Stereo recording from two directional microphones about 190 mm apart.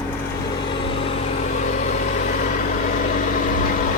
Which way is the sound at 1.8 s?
40° left (ahead or behind).